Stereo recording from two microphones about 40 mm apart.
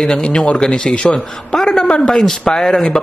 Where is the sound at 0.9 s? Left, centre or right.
Centre.